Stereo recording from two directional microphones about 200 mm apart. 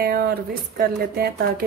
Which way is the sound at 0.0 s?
50° right (ahead or behind).